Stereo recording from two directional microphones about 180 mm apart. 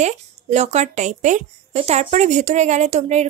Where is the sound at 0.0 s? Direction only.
40° right (ahead or behind).